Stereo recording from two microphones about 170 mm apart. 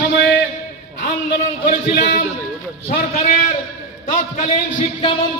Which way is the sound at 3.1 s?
35° left (ahead or behind).